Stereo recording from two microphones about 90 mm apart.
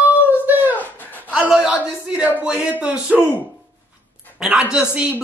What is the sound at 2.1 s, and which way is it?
A man's voice, 10° right (ahead or behind).